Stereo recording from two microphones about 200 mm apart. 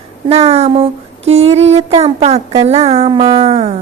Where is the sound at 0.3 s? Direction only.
30° right (ahead or behind).